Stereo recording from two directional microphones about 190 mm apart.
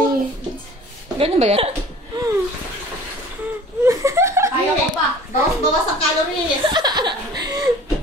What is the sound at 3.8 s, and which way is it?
Laughter, 15° right (ahead or behind).